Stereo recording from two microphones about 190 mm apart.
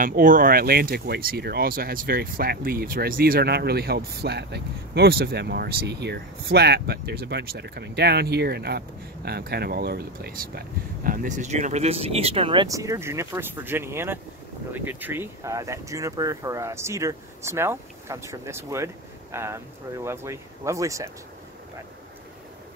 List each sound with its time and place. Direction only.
0.0 s speech: 45° right (ahead or behind)
11.1 s speech: 40° right (ahead or behind)
12.6 s speech: 15° right (ahead or behind)